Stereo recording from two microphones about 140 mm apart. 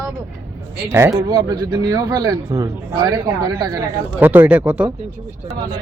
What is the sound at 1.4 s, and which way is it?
A man's voice, 25° right (ahead or behind).